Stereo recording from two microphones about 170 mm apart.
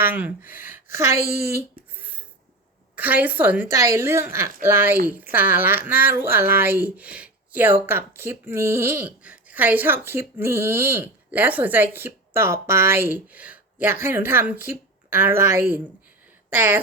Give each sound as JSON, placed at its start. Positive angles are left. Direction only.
{"t": 0.0, "sound": "speech", "side_deg": -10}
{"t": 2.0, "sound": "a sound", "side_deg": -10}
{"t": 2.9, "sound": "speech", "side_deg": -10}